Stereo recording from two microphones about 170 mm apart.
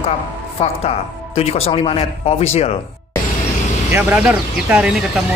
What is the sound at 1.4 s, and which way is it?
Speech, 35° left (ahead or behind).